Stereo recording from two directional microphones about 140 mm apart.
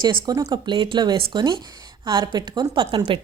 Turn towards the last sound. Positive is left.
turn(degrees=-35)  # may be behind; listen again after turning